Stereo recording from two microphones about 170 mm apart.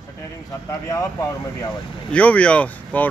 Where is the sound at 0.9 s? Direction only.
20° left (ahead or behind).